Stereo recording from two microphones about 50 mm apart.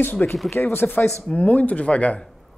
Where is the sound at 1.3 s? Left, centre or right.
Left.